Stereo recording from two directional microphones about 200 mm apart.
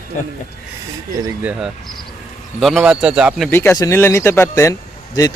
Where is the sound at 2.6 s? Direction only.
Centre (ahead or behind).